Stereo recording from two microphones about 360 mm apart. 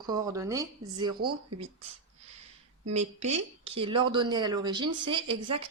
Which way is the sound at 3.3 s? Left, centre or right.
Centre.